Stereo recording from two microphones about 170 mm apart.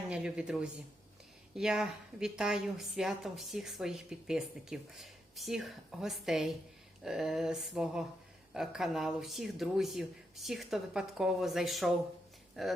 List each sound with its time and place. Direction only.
0.1 s a woman's voice: 5° right (ahead or behind)